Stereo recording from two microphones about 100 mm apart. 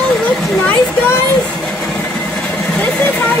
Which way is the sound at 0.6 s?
10° left (ahead or behind).